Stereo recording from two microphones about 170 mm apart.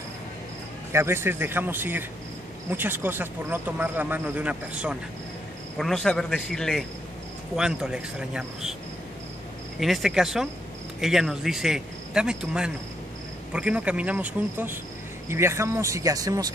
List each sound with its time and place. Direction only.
0.9 s speech: 15° right (ahead or behind)
5.8 s speech: 5° left (ahead or behind)
9.8 s speech: centre (ahead or behind); by 16.4 s 20° right (ahead or behind)